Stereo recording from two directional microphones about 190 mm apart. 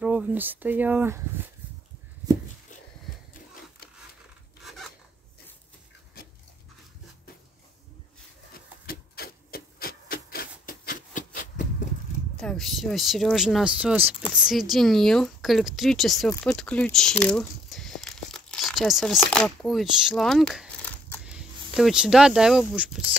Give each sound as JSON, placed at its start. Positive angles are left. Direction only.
{"t": 0.0, "sound": "speech", "side_deg": -10}
{"t": 4.6, "sound": "filing", "side_deg": 0}
{"t": 6.2, "sound": "dog", "side_deg": 55}
{"t": 8.8, "sound": "rub", "side_deg": 55}
{"t": 12.4, "sound": "speech", "side_deg": 0}
{"t": 21.3, "sound": "speech", "side_deg": -5}